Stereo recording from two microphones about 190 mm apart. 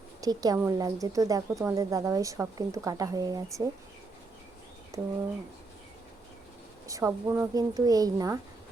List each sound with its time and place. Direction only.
0.2 s a woman's voice: 20° right (ahead or behind)
4.9 s speech: 15° right (ahead or behind)
6.8 s speech: 15° right (ahead or behind)